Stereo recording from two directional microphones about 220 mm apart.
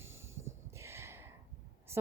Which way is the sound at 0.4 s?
10° right (ahead or behind).